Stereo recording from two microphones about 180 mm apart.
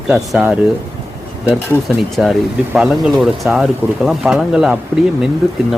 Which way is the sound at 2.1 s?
Centre (ahead or behind).